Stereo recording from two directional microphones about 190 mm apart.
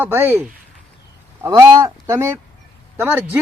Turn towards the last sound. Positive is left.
turn(degrees=-10)  # may be behind; listen again after turning